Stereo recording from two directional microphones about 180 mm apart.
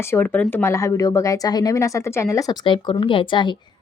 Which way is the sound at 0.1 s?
10° left (ahead or behind).